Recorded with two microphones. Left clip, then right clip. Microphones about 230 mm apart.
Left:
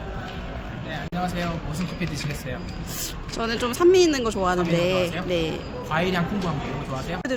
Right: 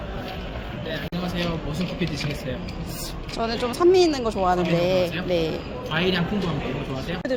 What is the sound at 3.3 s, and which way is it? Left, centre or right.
Speech, left.